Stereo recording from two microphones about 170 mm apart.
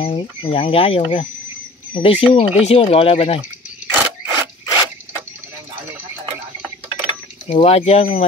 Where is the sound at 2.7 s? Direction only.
35° left (ahead or behind).